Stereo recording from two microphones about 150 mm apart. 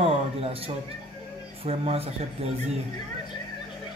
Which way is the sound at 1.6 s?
40° right (ahead or behind).